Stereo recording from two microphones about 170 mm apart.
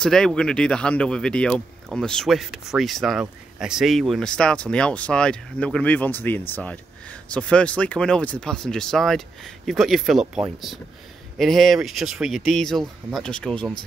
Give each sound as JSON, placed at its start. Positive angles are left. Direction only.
{"t": 0.0, "sound": "speech", "side_deg": 5}